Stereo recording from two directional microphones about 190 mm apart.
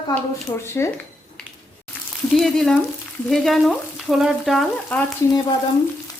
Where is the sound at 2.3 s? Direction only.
Centre (ahead or behind).